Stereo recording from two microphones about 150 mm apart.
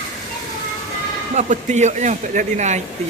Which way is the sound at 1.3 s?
55° right (ahead or behind).